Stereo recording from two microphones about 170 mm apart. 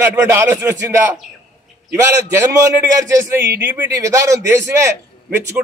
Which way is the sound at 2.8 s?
15° right (ahead or behind).